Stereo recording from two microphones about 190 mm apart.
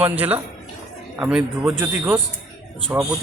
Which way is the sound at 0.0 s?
10° right (ahead or behind).